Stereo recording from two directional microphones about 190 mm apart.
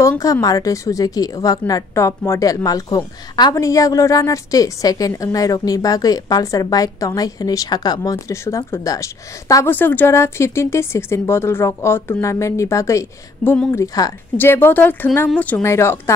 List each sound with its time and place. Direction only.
0.0 s a woman's voice: 15° left (ahead or behind)